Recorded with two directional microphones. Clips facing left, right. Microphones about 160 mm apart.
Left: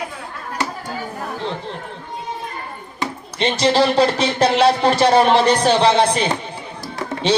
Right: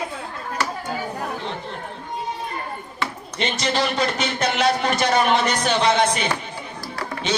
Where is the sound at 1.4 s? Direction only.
30° left (ahead or behind).